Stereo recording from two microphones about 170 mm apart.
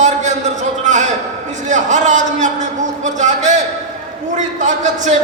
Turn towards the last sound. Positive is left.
turn(degrees=-45)  # may be behind; listen again after turning